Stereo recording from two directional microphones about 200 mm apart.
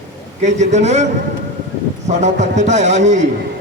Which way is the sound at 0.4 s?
35° right (ahead or behind).